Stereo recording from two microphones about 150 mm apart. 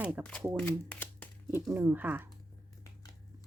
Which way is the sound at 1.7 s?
15° right (ahead or behind).